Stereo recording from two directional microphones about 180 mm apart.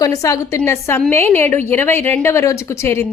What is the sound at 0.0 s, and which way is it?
A woman's voice, 20° left (ahead or behind).